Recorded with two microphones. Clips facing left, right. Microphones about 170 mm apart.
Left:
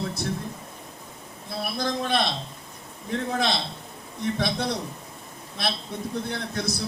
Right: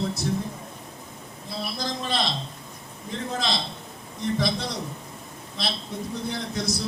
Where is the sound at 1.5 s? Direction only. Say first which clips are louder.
Left 3 dB; 55° left (ahead or behind).